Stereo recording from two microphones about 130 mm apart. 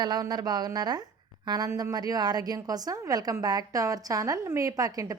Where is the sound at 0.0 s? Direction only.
30° right (ahead or behind).